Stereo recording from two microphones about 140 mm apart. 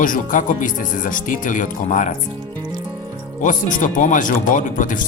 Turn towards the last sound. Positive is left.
turn(degrees=70)  # may be behind; listen again after turning